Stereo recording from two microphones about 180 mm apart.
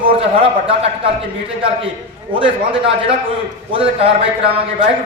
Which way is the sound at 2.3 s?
30° right (ahead or behind).